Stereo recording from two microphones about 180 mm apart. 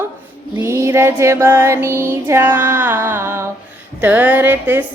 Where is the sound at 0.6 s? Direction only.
15° right (ahead or behind).